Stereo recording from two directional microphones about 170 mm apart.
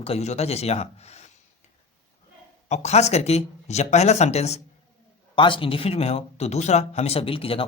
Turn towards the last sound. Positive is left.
turn(degrees=35)  # may be behind; listen again after turning